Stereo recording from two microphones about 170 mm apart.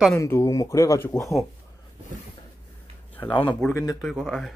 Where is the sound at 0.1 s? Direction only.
15° left (ahead or behind).